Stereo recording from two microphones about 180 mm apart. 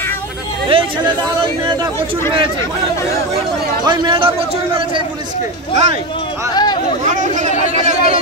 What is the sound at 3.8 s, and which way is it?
A man's voice, 25° right (ahead or behind).